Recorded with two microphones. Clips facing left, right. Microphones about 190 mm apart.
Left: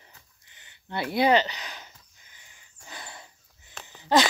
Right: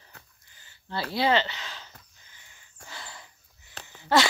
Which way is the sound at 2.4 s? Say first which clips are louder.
Right 1 dB; 20° left (ahead or behind).